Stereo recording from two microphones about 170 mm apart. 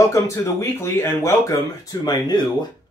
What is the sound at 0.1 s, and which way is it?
Speech, 15° left (ahead or behind).